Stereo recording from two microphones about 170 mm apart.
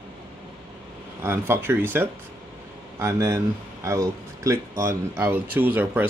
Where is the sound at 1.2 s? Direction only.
15° right (ahead or behind).